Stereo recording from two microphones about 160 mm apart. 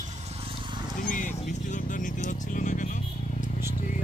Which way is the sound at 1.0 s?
55° left (ahead or behind).